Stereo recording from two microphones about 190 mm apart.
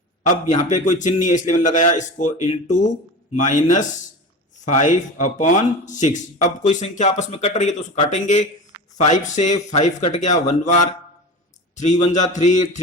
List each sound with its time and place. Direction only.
0.2 s speech: 40° left (ahead or behind)